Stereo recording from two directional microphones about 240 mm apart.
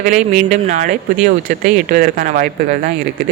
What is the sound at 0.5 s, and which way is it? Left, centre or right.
Speech, right.